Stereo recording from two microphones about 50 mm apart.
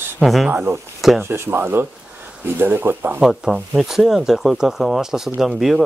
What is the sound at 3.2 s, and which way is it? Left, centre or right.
Speech, centre.